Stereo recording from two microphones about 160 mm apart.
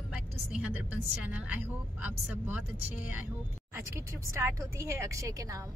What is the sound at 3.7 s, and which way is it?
A woman's voice, 15° right (ahead or behind).